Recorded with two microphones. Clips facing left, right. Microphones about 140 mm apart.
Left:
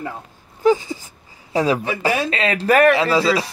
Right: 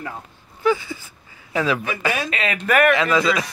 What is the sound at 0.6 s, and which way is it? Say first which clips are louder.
Speech: left 4 dB; 40° left (ahead or behind).